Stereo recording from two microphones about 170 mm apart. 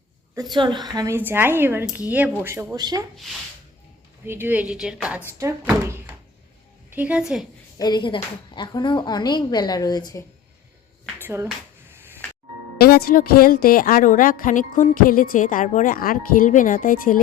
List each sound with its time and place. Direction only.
0.3 s a woman's voice: 25° right (ahead or behind)
4.3 s a woman's voice: 10° right (ahead or behind)
7.8 s speech: 25° left (ahead or behind)
11.2 s speech: 15° right (ahead or behind)
12.8 s a woman's voice: 60° left (ahead or behind)